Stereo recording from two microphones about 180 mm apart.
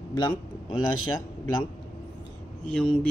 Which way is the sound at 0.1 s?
20° left (ahead or behind).